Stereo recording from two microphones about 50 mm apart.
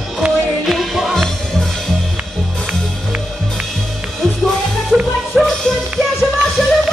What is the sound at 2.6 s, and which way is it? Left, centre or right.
Music, right.